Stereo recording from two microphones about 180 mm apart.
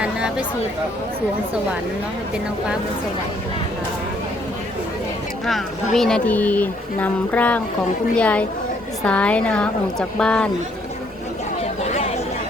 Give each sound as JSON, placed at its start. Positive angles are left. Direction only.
{"t": 0.0, "sound": "a sound", "side_deg": -5}
{"t": 5.5, "sound": "speech", "side_deg": 0}
{"t": 11.9, "sound": "chatter", "side_deg": 35}